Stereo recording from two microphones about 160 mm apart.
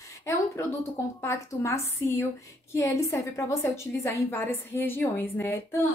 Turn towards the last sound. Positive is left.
turn(degrees=15)  # may be behind; listen again after turning